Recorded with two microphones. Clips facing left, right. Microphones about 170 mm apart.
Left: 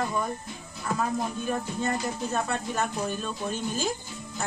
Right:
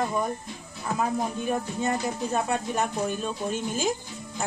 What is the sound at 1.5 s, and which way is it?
Speech, 15° right (ahead or behind).